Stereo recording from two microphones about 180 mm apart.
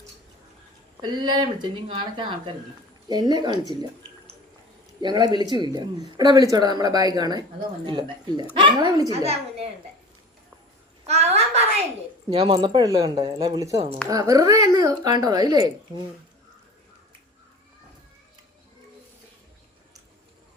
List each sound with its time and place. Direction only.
1.0 s speech: 25° right (ahead or behind)
4.9 s speech: 25° right (ahead or behind)
9.2 s a woman's voice: 35° right (ahead or behind)
11.0 s a sound: 35° right (ahead or behind)
12.3 s speech: 30° right (ahead or behind)